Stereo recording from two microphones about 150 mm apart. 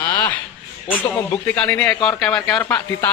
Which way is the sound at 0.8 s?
10° left (ahead or behind).